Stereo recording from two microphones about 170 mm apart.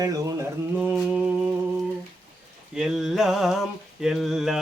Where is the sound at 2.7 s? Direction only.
5° right (ahead or behind).